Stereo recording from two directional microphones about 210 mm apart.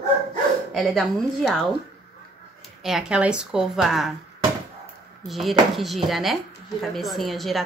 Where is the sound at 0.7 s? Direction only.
Centre (ahead or behind).